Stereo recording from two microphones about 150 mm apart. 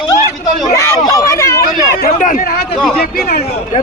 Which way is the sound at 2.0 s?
65° left (ahead or behind).